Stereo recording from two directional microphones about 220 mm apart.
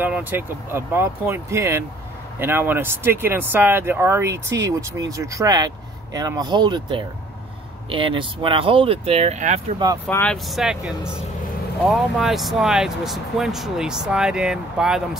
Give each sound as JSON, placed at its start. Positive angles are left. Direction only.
{"t": 0.0, "sound": "speech", "side_deg": -10}
{"t": 10.0, "sound": "speech", "side_deg": 5}